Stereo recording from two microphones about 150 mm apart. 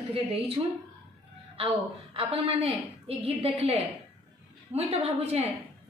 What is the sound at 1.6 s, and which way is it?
A woman's voice, 40° right (ahead or behind).